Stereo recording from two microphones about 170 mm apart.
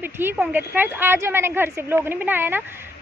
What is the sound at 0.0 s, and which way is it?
A woman's voice, 10° right (ahead or behind).